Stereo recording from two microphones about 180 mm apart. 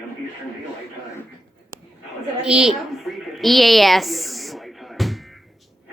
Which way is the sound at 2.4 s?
5° right (ahead or behind).